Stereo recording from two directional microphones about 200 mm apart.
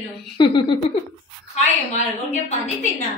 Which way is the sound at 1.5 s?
35° left (ahead or behind).